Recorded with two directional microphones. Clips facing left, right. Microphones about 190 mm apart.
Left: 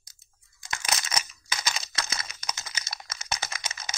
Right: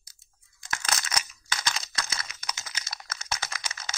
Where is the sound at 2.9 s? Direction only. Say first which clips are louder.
Even; 15° left (ahead or behind).